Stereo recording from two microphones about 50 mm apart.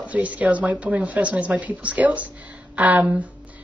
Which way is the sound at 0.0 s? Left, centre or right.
Right.